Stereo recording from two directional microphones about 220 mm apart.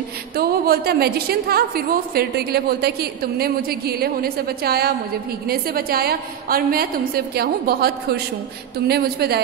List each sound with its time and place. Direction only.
0.4 s a woman's voice: 45° right (ahead or behind)